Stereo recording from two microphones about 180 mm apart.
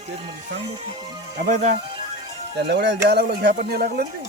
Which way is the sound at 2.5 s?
70° right (ahead or behind).